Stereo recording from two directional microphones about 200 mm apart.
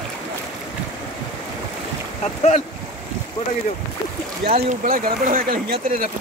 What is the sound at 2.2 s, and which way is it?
Speech, 35° left (ahead or behind).